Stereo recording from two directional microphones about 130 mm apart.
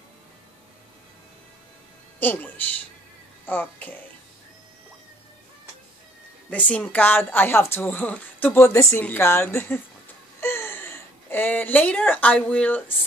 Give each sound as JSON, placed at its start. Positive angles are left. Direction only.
{"t": 2.1, "sound": "a child's voice", "side_deg": 15}
{"t": 6.5, "sound": "speech", "side_deg": 10}